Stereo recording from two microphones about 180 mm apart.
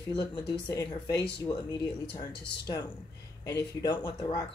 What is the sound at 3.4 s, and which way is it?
Speech, 20° left (ahead or behind).